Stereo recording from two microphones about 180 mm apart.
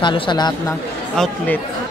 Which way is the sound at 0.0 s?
25° left (ahead or behind).